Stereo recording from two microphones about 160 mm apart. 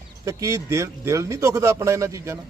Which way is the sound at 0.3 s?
20° right (ahead or behind).